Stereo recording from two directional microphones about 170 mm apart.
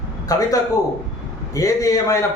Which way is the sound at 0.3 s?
20° left (ahead or behind).